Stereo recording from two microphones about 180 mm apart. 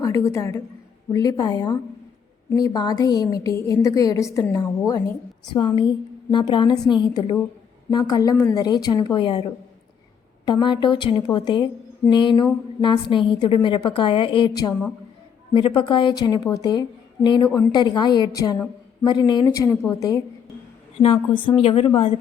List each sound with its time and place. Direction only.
0.0 s a woman's voice: 15° left (ahead or behind)
10.4 s a woman's voice: 25° left (ahead or behind)
21.0 s a woman's voice: 30° left (ahead or behind)